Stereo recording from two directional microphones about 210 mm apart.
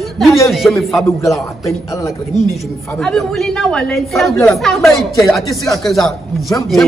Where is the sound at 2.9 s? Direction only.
5° left (ahead or behind).